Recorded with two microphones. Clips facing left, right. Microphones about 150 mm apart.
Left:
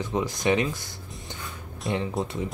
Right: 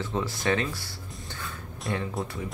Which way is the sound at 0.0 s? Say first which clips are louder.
Left 3 dB; 15° left (ahead or behind).